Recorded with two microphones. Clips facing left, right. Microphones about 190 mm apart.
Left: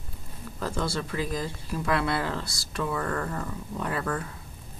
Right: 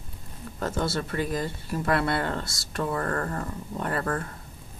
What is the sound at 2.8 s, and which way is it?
Speech, 45° right (ahead or behind).